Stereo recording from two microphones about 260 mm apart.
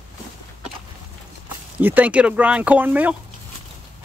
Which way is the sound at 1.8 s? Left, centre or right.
Centre.